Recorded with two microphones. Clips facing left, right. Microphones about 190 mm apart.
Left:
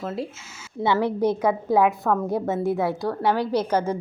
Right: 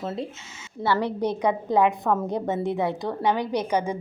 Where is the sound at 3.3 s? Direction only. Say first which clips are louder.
Left 2 dB; 15° right (ahead or behind).